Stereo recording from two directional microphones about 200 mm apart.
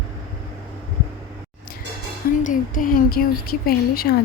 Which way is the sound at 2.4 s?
40° left (ahead or behind).